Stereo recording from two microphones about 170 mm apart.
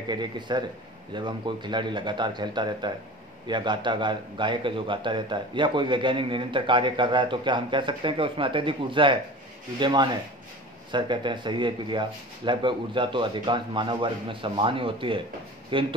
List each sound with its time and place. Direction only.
0.1 s a man's voice: 25° right (ahead or behind)